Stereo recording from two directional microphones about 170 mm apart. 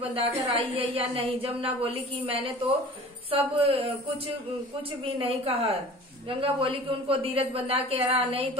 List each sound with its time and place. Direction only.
0.2 s a woman's voice: 35° right (ahead or behind)
5.0 s a woman's voice: 30° right (ahead or behind)